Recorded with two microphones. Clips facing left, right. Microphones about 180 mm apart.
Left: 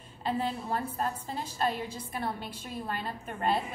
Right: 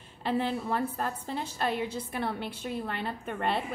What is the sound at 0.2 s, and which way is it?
A woman's voice, 65° right (ahead or behind).